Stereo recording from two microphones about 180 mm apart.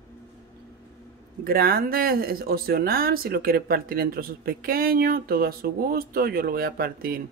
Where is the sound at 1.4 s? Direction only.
55° right (ahead or behind).